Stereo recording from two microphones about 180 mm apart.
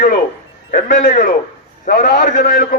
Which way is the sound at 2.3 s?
45° left (ahead or behind).